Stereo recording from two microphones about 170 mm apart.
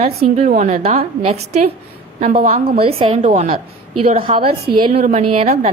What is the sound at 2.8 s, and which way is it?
A woman's voice, 35° right (ahead or behind).